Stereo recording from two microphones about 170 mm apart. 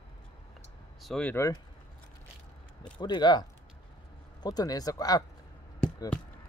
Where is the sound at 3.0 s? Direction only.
25° left (ahead or behind).